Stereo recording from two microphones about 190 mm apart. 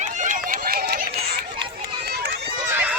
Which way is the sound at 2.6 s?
10° right (ahead or behind).